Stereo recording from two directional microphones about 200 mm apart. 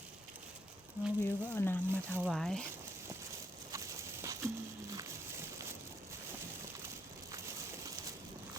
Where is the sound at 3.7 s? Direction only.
15° right (ahead or behind).